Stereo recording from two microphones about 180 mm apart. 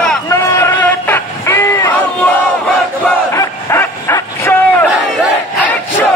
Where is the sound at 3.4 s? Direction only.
15° left (ahead or behind).